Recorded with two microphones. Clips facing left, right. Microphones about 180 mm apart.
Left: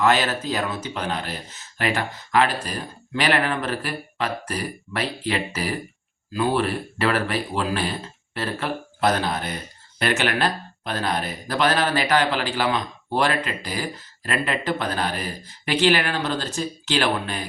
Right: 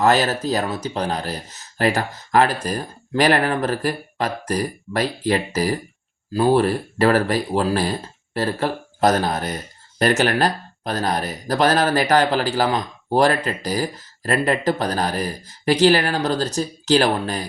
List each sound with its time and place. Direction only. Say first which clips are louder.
0.0 s speech: right 3 dB; 40° right (ahead or behind)